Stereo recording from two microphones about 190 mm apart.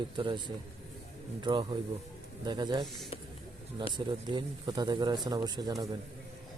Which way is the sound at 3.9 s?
25° right (ahead or behind).